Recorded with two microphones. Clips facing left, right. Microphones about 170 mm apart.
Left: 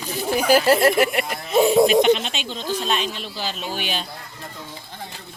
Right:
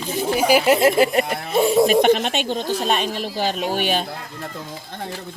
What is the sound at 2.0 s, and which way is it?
Speech, 55° right (ahead or behind).